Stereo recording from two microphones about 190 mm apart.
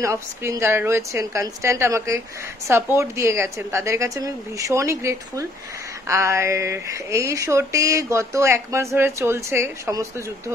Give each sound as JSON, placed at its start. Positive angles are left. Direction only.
{"t": 0.0, "sound": "speech", "side_deg": -15}